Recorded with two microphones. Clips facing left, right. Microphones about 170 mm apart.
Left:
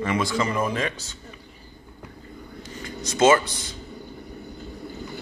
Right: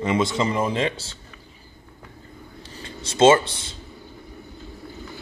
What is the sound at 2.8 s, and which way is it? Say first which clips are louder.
Speech: right 3 dB; 30° right (ahead or behind).